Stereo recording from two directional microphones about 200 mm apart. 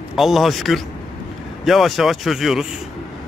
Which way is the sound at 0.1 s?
Centre (ahead or behind).